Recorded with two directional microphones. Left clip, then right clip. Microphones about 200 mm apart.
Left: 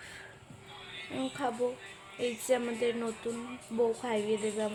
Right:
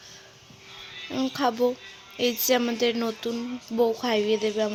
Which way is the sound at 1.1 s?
45° right (ahead or behind).